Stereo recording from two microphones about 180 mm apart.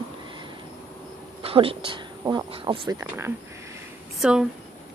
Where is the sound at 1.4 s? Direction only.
30° right (ahead or behind).